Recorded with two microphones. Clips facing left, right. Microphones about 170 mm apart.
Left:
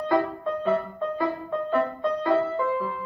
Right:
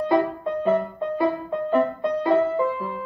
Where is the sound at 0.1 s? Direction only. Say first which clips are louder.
Right 1 dB; 20° right (ahead or behind).